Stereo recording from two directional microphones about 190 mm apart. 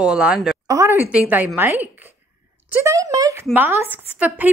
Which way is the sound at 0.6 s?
15° right (ahead or behind).